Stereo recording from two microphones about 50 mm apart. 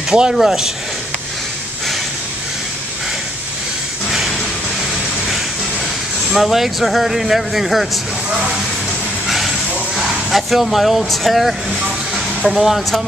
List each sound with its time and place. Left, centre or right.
0.1 s speech: centre
0.4 s speech: centre
4.1 s a sound: centre
6.3 s speech: centre
9.3 s a sound: centre
12.4 s speech: centre